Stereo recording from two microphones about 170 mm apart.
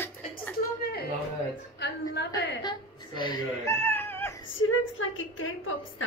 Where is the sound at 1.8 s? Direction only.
85° left.